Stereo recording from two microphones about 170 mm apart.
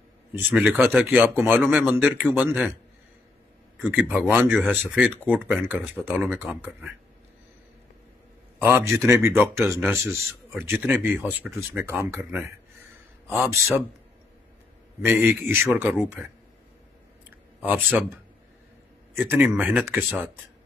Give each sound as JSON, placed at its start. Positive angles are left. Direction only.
{"t": 0.5, "sound": "speech", "side_deg": -10}
{"t": 3.8, "sound": "speech", "side_deg": -10}
{"t": 8.5, "sound": "speech", "side_deg": -10}
{"t": 13.4, "sound": "speech", "side_deg": -15}
{"t": 15.0, "sound": "speech", "side_deg": -10}
{"t": 19.2, "sound": "speech", "side_deg": -10}